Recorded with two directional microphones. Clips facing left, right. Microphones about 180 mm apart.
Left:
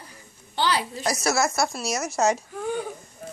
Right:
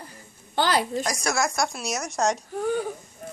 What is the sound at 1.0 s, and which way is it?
Speech, 5° left (ahead or behind).